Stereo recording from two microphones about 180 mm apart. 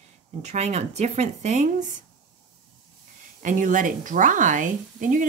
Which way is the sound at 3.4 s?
45° right (ahead or behind).